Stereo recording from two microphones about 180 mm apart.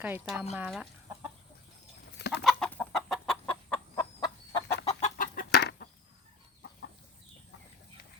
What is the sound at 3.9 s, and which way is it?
Fowl, 20° left (ahead or behind).